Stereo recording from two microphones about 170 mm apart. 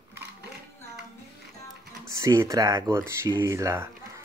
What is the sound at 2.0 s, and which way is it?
Speech, 20° right (ahead or behind).